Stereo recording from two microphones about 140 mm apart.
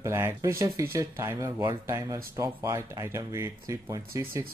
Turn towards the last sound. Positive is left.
turn(degrees=-25)  # may be behind; listen again after turning